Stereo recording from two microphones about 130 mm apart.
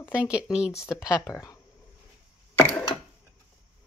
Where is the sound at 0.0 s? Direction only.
10° right (ahead or behind).